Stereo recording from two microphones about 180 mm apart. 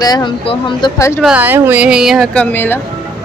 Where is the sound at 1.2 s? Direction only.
5° right (ahead or behind); by 2.7 s 10° left (ahead or behind).